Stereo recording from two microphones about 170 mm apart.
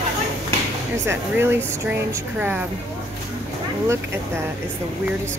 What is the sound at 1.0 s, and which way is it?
Speech, 10° right (ahead or behind).